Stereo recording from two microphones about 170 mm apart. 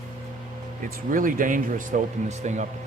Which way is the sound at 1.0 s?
55° right (ahead or behind).